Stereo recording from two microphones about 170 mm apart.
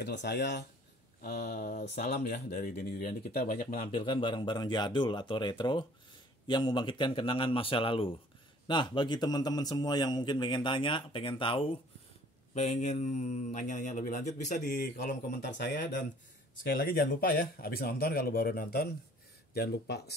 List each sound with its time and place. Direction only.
0.0 s speech: 85° left
1.4 s speech: 45° left (ahead or behind)
3.9 s a man's voice: 30° left (ahead or behind); by 14.6 s 45° left (ahead or behind)
15.6 s speech: 55° left (ahead or behind); by 20.2 s 75° left (ahead or behind)